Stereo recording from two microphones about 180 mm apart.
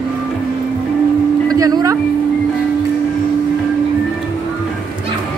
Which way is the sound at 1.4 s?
20° right (ahead or behind).